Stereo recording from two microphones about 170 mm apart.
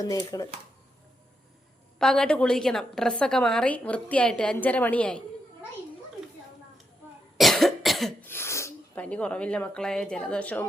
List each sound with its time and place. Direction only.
0.0 s speech: 20° left (ahead or behind)
2.0 s a woman's voice: 5° left (ahead or behind)
7.3 s cough: centre (ahead or behind)
8.2 s speech: 15° left (ahead or behind)